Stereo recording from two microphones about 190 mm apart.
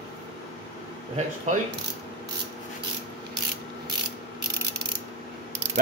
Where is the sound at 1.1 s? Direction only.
40° right (ahead or behind).